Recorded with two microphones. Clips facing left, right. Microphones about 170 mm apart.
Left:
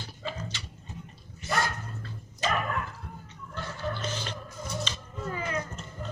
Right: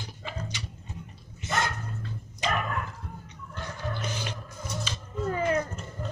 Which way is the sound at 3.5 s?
15° right (ahead or behind).